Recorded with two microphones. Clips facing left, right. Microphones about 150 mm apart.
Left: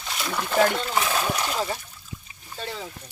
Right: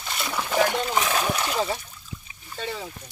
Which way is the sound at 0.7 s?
15° right (ahead or behind).